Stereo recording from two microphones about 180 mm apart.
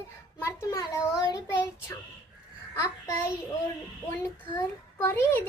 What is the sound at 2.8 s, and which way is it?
A woman's voice, 15° left (ahead or behind).